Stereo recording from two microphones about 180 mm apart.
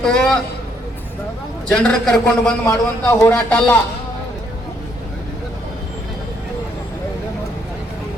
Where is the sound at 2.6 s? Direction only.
15° left (ahead or behind).